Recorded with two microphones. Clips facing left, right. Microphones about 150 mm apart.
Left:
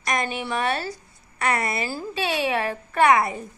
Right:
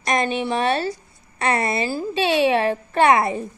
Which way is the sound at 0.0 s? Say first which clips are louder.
Right 5 dB; 25° right (ahead or behind).